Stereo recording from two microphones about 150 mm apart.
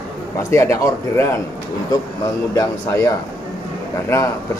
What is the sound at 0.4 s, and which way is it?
Speech, 20° left (ahead or behind).